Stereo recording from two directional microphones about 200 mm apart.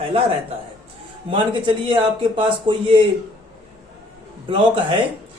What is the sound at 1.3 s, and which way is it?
Speech, 25° right (ahead or behind).